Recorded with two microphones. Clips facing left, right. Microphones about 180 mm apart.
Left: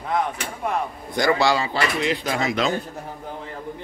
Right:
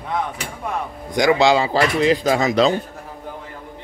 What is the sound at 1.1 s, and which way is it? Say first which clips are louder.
Speech: right 4 dB; 20° right (ahead or behind).